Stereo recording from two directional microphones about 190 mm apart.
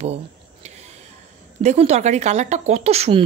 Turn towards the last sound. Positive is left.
turn(degrees=-35)  # may be behind; listen again after turning